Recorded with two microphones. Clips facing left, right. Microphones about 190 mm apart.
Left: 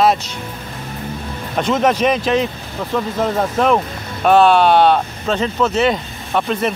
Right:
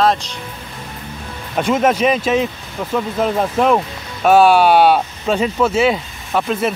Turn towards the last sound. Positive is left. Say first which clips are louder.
# even
turn(degrees=-5)  # may be behind; listen again after turning